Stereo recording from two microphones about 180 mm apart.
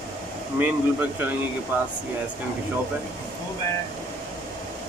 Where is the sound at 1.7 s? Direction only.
10° right (ahead or behind).